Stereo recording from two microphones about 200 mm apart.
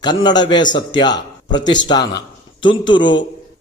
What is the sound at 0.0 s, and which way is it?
A man's voice, 20° left (ahead or behind).